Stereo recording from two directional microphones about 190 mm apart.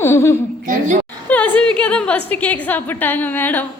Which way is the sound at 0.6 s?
45° right (ahead or behind).